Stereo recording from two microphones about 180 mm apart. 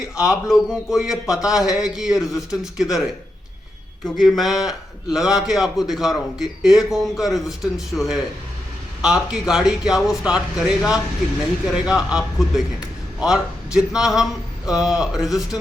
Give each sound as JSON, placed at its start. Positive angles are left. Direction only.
{"t": 0.2, "sound": "a man's voice", "side_deg": -5}
{"t": 4.0, "sound": "a man's voice", "side_deg": 0}